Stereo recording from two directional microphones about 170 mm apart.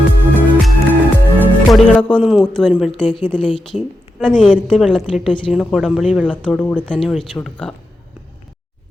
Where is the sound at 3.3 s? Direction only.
5° left (ahead or behind).